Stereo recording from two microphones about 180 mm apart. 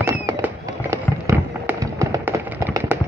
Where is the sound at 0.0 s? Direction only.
15° right (ahead or behind).